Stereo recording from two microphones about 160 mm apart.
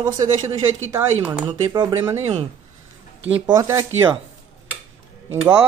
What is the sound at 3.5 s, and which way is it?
Speech, 20° right (ahead or behind).